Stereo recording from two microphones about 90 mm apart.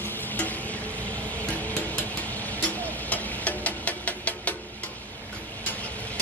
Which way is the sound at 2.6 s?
15° left (ahead or behind).